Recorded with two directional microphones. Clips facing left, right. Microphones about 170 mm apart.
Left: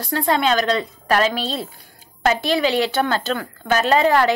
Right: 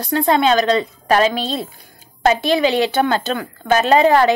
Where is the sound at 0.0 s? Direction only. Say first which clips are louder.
Right 4 dB; 20° right (ahead or behind).